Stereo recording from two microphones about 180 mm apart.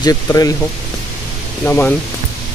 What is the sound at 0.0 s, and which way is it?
Speech, 20° left (ahead or behind).